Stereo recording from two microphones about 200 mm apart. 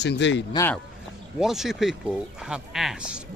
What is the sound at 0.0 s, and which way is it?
Speech, 60° left (ahead or behind).